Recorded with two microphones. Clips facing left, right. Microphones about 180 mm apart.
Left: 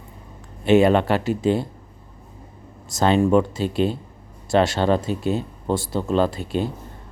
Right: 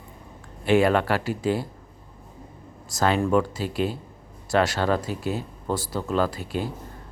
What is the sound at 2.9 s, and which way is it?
Speech, 25° left (ahead or behind).